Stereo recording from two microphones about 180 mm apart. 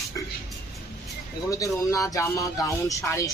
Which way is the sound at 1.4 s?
20° left (ahead or behind).